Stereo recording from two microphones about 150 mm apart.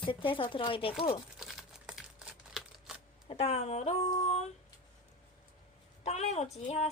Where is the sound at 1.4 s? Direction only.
5° right (ahead or behind).